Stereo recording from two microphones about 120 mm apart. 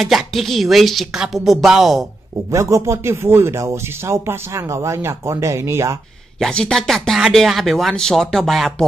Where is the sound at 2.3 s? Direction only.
25° right (ahead or behind).